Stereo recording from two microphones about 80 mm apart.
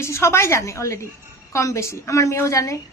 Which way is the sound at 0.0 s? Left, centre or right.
Left.